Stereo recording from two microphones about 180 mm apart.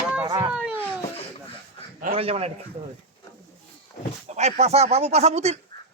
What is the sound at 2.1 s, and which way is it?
Speech, 35° right (ahead or behind).